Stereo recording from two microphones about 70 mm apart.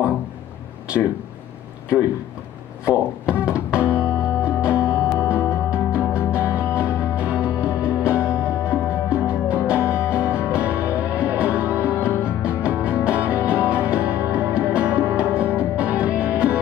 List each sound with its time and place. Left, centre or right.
2.8 s speech: centre
3.9 s music: centre